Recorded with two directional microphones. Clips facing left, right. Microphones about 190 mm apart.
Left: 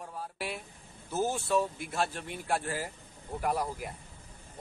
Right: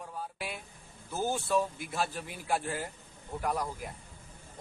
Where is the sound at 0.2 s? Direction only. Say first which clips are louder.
Left 2 dB; centre (ahead or behind).